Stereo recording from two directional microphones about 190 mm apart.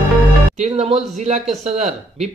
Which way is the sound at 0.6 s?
35° right (ahead or behind).